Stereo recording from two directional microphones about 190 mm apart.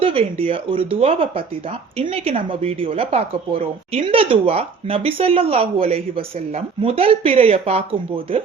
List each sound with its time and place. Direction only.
0.0 s speech: 30° right (ahead or behind)